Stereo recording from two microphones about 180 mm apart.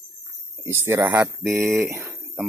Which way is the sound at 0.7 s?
15° right (ahead or behind).